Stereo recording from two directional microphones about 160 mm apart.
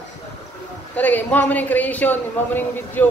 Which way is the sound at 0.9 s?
10° left (ahead or behind).